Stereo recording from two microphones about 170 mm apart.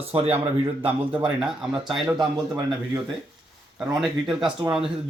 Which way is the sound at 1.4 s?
5° right (ahead or behind).